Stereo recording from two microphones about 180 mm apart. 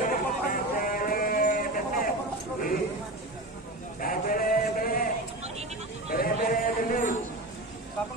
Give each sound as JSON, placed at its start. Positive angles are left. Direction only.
{"t": 0.1, "sound": "sheep", "side_deg": 50}
{"t": 4.0, "sound": "male singing", "side_deg": 50}
{"t": 6.0, "sound": "a sound", "side_deg": 55}